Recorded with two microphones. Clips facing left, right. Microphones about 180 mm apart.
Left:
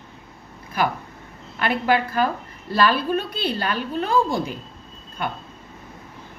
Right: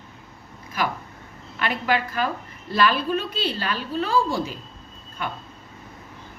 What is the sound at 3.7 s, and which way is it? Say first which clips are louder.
Speech: left 1 dB; 55° left (ahead or behind).